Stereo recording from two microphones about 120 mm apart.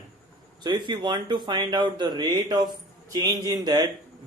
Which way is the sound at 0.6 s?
40° right (ahead or behind).